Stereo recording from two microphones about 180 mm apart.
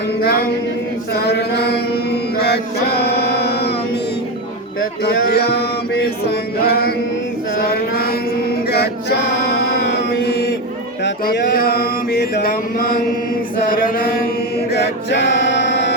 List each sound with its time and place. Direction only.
0.2 s music: 60° left (ahead or behind)
2.4 s male singing: 65° left (ahead or behind)
5.0 s music: 60° left (ahead or behind)
7.6 s mantra: 60° left (ahead or behind)
8.7 s male singing: 65° left (ahead or behind)
9.7 s music: 70° left (ahead or behind)
11.0 s mantra: 65° left (ahead or behind)
13.7 s chant: 50° left (ahead or behind)
14.7 s music: 75° left (ahead or behind)